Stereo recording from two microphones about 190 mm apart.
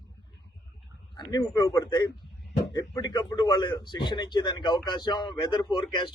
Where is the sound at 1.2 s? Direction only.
20° left (ahead or behind).